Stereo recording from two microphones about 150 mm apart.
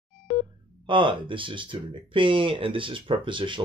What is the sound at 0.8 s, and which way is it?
Speech, 35° right (ahead or behind).